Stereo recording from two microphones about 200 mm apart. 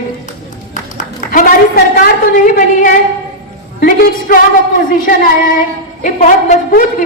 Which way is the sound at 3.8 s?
45° left (ahead or behind).